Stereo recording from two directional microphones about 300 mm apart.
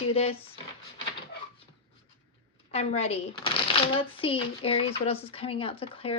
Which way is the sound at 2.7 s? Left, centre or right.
Left.